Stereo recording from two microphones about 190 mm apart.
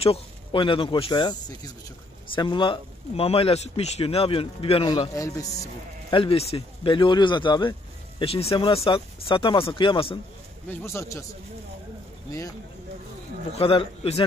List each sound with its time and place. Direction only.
0.0 s speech: 30° left (ahead or behind)
2.3 s speech: 25° left (ahead or behind)
5.1 s a man's voice: 15° left (ahead or behind)
10.7 s a man's voice: 10° left (ahead or behind)
12.3 s a man's voice: 15° left (ahead or behind)
13.5 s a man's voice: 30° left (ahead or behind)